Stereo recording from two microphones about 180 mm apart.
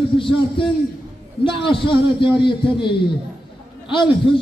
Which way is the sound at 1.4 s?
30° left (ahead or behind).